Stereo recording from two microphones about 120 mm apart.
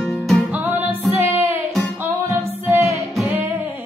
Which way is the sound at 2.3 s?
15° right (ahead or behind).